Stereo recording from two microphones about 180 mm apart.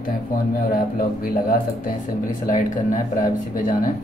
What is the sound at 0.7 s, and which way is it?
Speech, 55° left (ahead or behind).